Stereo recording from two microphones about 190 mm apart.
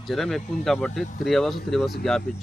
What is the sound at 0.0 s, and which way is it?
Speech, centre (ahead or behind).